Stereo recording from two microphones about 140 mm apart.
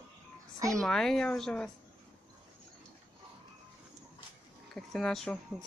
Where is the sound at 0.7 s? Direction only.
5° left (ahead or behind).